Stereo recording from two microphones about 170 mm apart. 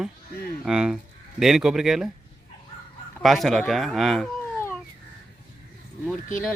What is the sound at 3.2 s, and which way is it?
Speech, centre (ahead or behind).